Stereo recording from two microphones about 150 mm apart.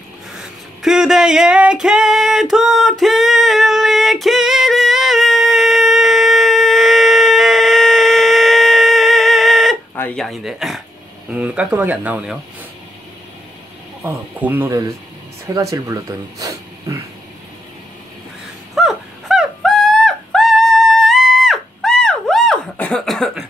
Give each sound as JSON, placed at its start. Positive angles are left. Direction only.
{"t": 0.3, "sound": "a sound", "side_deg": -5}
{"t": 10.1, "sound": "speech", "side_deg": 0}
{"t": 14.0, "sound": "speech", "side_deg": -15}
{"t": 18.8, "sound": "music", "side_deg": 0}